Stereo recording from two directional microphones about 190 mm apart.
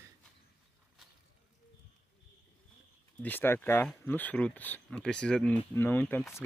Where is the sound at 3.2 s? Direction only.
10° left (ahead or behind).